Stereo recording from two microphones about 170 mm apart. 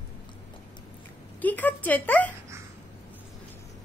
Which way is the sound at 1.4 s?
10° left (ahead or behind).